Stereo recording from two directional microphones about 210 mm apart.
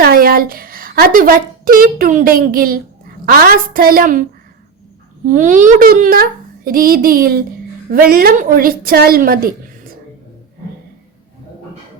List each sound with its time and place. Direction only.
0.0 s a woman's voice: 45° right (ahead or behind)